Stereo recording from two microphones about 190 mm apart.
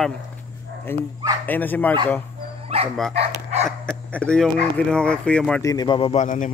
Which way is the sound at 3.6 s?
5° left (ahead or behind).